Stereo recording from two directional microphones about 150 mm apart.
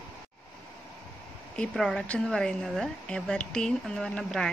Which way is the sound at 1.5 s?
5° left (ahead or behind).